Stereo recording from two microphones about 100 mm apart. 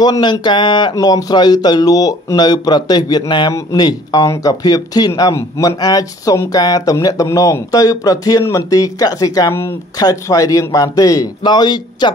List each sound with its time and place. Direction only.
0.0 s speech: 45° left (ahead or behind); by 9.8 s 25° left (ahead or behind)
9.9 s speech: 35° left (ahead or behind)